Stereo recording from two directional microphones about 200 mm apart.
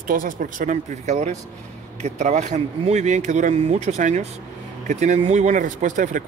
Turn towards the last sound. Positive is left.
turn(degrees=-40)  # may be behind; listen again after turning